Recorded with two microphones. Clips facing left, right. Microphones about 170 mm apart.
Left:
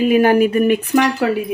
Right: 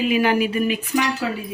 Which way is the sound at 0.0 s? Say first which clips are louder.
Left 6 dB; 50° left (ahead or behind).